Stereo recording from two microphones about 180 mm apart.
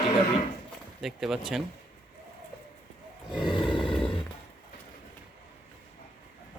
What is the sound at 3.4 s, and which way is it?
Roar, 25° left (ahead or behind).